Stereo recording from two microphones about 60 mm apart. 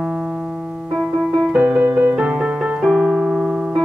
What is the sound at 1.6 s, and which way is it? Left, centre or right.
Music, right.